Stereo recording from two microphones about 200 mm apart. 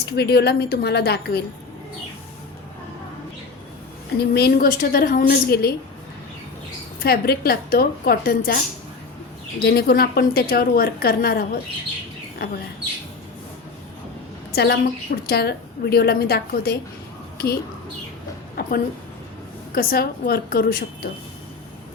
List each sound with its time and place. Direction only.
0.0 s a woman's voice: 55° left (ahead or behind)
4.2 s a woman's voice: 50° left (ahead or behind)
7.0 s a woman's voice: 50° left (ahead or behind)
14.5 s a woman's voice: 55° left (ahead or behind)
18.6 s a sound: 50° left (ahead or behind)
19.7 s a woman's voice: 50° left (ahead or behind)